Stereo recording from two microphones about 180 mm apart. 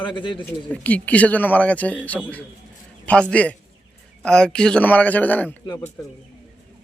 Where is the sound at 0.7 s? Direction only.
10° left (ahead or behind).